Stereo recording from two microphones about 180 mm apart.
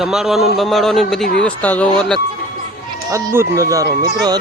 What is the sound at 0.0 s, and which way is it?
A man's voice, centre (ahead or behind).